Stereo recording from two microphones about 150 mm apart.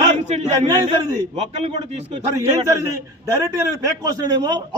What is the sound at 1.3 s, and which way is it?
Speech, 50° right (ahead or behind).